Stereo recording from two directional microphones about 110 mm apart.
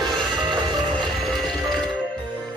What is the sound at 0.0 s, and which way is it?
Music, 5° left (ahead or behind).